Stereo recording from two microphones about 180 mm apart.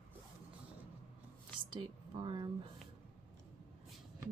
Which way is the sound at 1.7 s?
25° right (ahead or behind).